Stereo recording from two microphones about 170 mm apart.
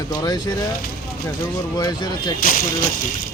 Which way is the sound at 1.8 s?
25° left (ahead or behind).